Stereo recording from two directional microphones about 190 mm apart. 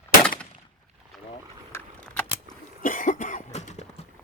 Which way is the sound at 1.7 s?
10° left (ahead or behind).